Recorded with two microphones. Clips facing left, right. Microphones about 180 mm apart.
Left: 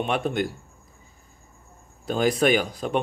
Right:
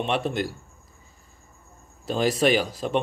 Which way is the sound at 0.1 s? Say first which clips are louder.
Even; 50° left (ahead or behind).